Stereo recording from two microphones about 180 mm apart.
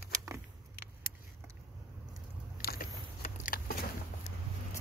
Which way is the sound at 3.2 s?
55° left (ahead or behind).